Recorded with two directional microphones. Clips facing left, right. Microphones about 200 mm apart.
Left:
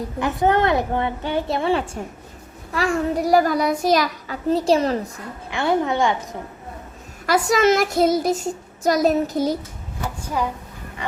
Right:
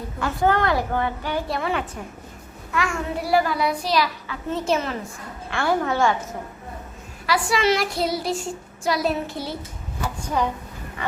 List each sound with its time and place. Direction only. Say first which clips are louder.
0.2 s a woman's voice: left 2 dB; 20° left (ahead or behind); by 4.9 s 35° left (ahead or behind)
5.5 s a woman's voice: left 2 dB; 20° left (ahead or behind)
7.3 s a woman's voice: left 4 dB; 45° left (ahead or behind)